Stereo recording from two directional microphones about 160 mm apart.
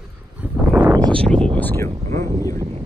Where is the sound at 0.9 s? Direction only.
25° right (ahead or behind).